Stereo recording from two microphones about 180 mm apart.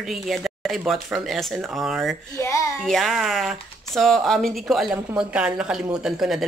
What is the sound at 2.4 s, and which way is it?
Speech, 15° left (ahead or behind).